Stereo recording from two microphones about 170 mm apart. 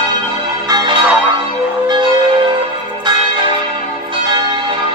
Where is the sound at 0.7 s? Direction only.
25° right (ahead or behind).